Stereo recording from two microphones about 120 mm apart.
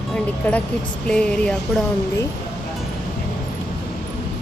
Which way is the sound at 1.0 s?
10° left (ahead or behind).